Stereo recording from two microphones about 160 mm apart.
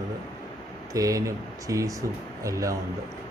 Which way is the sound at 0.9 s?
20° right (ahead or behind).